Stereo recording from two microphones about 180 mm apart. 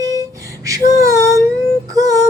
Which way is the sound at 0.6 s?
20° right (ahead or behind).